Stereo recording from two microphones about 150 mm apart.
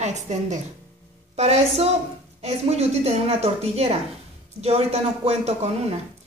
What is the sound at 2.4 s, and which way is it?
A woman's voice, 45° right (ahead or behind).